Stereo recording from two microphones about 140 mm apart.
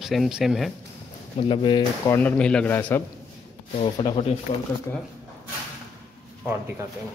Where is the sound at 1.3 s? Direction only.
35° left (ahead or behind).